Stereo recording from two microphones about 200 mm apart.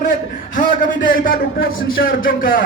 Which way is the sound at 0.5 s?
40° left (ahead or behind).